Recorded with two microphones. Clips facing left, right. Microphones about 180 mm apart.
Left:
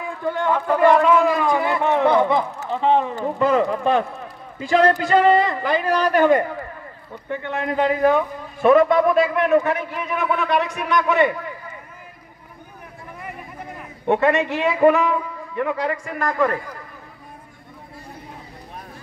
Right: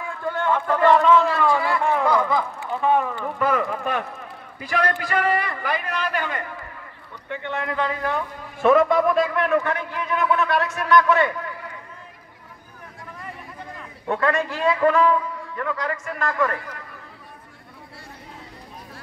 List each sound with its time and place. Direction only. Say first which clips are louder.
0.4 s a man's voice: left 2 dB; 15° left (ahead or behind)
8.6 s a man's voice: left 3 dB; centre (ahead or behind); by 11.3 s 15° left (ahead or behind)
14.0 s a man's voice: left 5 dB; 20° left (ahead or behind)